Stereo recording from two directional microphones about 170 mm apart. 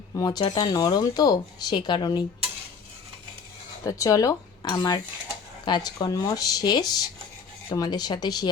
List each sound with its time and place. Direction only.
0.2 s speech: 25° left (ahead or behind)
3.8 s speech: 20° left (ahead or behind)